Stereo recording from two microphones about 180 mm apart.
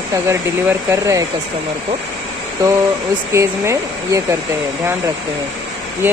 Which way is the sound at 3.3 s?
15° right (ahead or behind).